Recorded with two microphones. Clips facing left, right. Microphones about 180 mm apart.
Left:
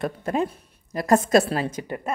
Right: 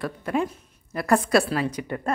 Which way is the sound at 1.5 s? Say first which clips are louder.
Even; 25° left (ahead or behind).